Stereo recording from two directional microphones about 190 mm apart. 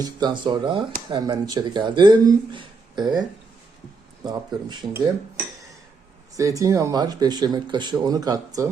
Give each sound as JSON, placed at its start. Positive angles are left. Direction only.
{"t": 0.0, "sound": "speech", "side_deg": -20}
{"t": 6.3, "sound": "speech", "side_deg": -15}